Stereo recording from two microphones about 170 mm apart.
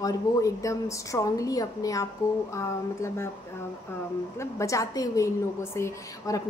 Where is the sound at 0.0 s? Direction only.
20° left (ahead or behind).